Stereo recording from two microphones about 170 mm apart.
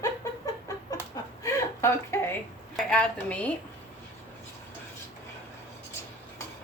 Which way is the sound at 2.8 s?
5° left (ahead or behind).